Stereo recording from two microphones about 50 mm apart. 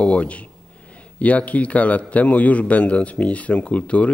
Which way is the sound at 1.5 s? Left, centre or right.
Left.